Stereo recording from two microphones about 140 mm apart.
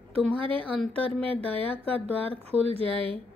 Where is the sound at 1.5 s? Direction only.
10° left (ahead or behind).